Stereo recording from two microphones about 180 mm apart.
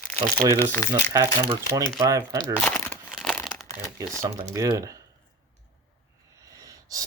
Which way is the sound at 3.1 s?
Centre (ahead or behind).